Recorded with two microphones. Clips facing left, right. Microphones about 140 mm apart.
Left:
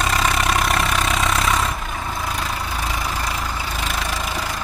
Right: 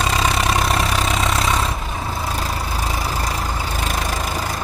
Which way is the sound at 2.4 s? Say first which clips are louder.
Right 1 dB; 35° right (ahead or behind).